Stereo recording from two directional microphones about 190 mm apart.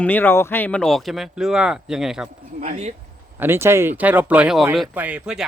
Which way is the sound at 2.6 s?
40° right (ahead or behind).